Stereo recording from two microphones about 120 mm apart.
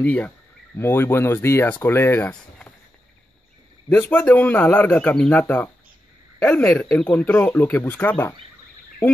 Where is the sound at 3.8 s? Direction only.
15° left (ahead or behind).